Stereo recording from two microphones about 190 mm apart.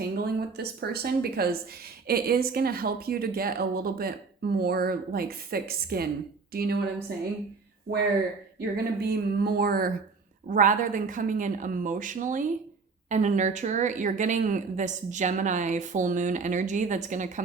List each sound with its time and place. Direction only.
0.2 s a woman's voice: 55° right (ahead or behind)
8.7 s speech: 55° right (ahead or behind)